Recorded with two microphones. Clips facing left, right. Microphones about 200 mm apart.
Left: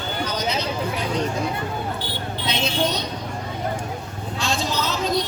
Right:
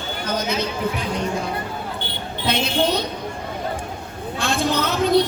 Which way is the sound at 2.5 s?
55° right (ahead or behind).